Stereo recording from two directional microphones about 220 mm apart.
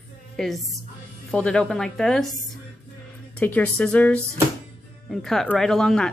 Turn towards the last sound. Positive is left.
turn(degrees=5)  # may be behind; listen again after turning